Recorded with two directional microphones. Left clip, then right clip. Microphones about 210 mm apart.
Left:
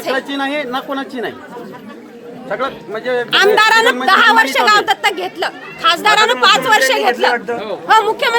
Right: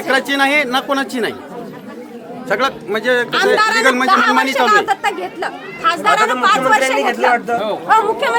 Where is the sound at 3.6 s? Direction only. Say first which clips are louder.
Left 2 dB; 35° left (ahead or behind).